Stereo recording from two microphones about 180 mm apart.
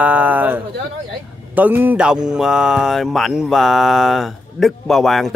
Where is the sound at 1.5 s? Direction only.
10° right (ahead or behind).